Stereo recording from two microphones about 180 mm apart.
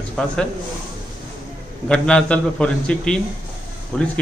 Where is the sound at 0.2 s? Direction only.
5° left (ahead or behind).